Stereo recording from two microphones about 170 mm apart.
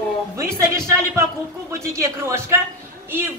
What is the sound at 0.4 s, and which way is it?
Speech, 15° right (ahead or behind).